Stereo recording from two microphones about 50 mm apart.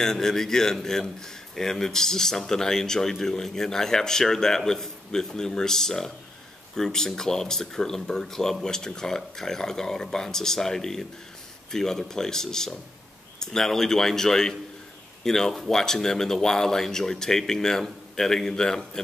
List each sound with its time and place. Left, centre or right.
0.0 s a man's voice: centre